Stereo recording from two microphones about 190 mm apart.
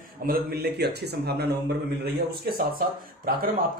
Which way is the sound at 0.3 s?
55° right (ahead or behind).